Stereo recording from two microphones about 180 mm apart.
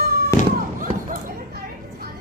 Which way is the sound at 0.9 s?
30° right (ahead or behind).